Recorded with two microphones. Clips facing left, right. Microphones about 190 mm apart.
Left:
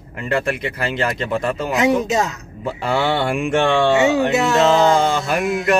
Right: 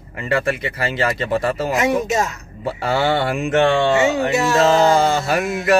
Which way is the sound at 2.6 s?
Centre (ahead or behind).